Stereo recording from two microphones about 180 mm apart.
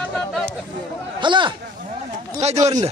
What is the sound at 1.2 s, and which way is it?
Speech, 25° right (ahead or behind).